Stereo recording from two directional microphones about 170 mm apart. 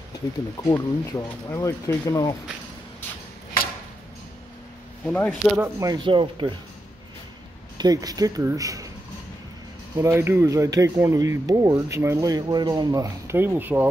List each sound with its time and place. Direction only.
0.7 s speech: 20° left (ahead or behind)
5.0 s speech: 5° left (ahead or behind)
5.6 s speech: 20° right (ahead or behind)
7.7 s speech: 20° right (ahead or behind)
9.9 s speech: 15° right (ahead or behind)